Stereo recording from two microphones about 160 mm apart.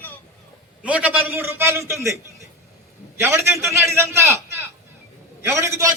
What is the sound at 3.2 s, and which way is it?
A man's voice, 15° right (ahead or behind).